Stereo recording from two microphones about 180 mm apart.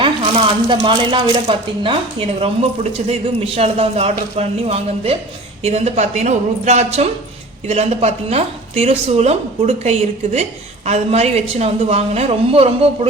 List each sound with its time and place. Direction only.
0.0 s a woman's voice: 30° right (ahead or behind)